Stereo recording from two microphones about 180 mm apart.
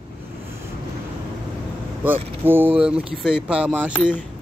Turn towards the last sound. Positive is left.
turn(degrees=-5)  # may be behind; listen again after turning